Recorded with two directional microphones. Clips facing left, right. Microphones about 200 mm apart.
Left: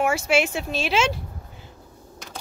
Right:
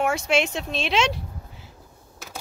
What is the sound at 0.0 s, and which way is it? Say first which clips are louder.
Speech: left 1 dB; 5° left (ahead or behind).